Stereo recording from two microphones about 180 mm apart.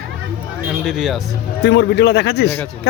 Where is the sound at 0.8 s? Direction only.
5° right (ahead or behind).